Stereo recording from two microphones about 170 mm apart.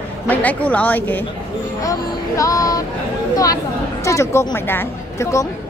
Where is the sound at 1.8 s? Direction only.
20° left (ahead or behind).